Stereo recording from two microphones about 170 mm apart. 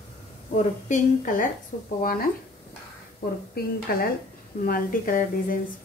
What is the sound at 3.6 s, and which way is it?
A woman's voice, 65° left (ahead or behind).